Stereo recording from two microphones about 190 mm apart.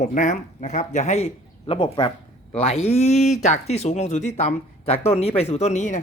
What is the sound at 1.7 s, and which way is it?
Speech, 25° left (ahead or behind).